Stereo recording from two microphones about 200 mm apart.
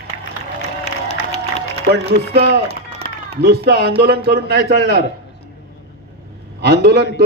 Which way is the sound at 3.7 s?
50° right (ahead or behind).